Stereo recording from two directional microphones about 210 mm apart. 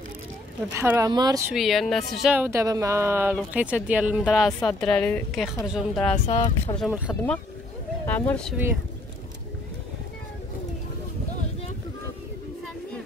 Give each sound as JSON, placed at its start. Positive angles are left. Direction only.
{"t": 0.7, "sound": "a woman's voice", "side_deg": -10}
{"t": 1.5, "sound": "a woman's voice", "side_deg": 0}
{"t": 6.2, "sound": "speech", "side_deg": 30}
{"t": 6.8, "sound": "a woman's voice", "side_deg": -5}
{"t": 8.1, "sound": "speech", "side_deg": 10}